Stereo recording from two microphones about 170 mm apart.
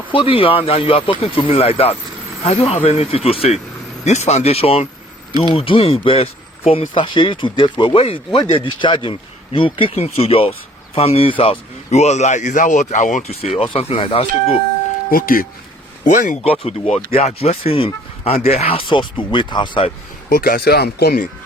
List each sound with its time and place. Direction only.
0.1 s a man's voice: 30° left (ahead or behind)
15.1 s speech: 60° left (ahead or behind); by 19.9 s 30° left (ahead or behind)
20.3 s speech: 60° left (ahead or behind)